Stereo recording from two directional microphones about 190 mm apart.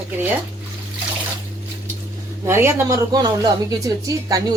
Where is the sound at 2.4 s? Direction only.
15° right (ahead or behind).